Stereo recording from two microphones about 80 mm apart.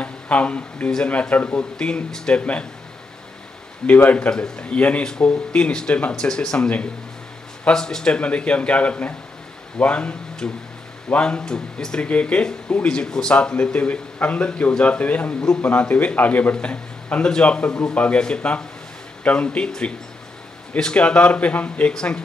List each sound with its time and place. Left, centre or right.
0.0 s speech: centre
3.8 s speech: centre